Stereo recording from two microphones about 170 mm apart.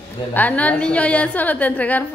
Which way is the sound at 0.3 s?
10° left (ahead or behind).